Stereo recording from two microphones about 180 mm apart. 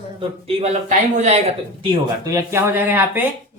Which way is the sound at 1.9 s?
20° right (ahead or behind).